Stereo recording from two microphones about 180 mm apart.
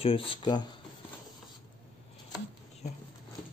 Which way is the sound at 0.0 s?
30° left (ahead or behind).